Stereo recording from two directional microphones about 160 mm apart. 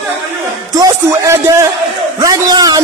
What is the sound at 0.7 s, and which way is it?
A man's voice, 20° right (ahead or behind).